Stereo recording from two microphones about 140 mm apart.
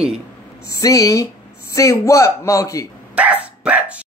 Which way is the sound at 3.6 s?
10° right (ahead or behind).